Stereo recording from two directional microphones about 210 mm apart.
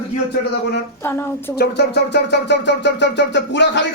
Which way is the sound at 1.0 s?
10° left (ahead or behind).